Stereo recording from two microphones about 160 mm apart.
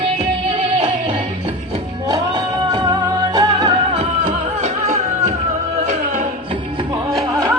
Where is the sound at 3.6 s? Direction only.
40° right (ahead or behind).